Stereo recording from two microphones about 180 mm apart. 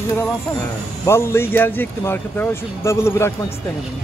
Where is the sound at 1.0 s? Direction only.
15° left (ahead or behind).